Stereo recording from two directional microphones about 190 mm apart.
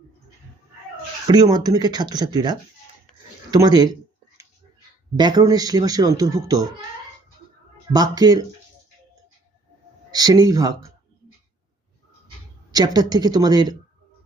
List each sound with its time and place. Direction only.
1.3 s speech: 20° right (ahead or behind)
5.1 s speech: 20° right (ahead or behind)
7.9 s speech: 20° right (ahead or behind)
10.1 s speech: 20° right (ahead or behind)
12.7 s speech: 20° right (ahead or behind)